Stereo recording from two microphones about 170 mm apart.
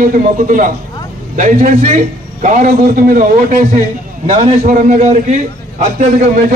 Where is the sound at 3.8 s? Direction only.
40° right (ahead or behind).